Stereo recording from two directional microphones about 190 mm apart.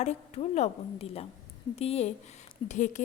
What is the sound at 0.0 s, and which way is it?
A woman's voice, 35° left (ahead or behind).